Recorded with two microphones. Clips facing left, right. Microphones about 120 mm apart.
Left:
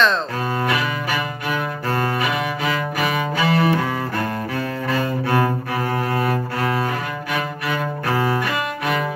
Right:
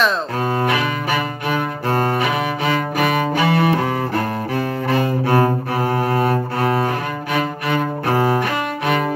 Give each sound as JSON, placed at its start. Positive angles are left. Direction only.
{"t": 1.9, "sound": "music", "side_deg": -35}
{"t": 7.7, "sound": "cello", "side_deg": -35}